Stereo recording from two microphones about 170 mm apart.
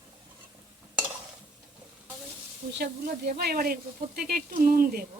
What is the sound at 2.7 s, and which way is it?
Speech, 75° right (ahead or behind).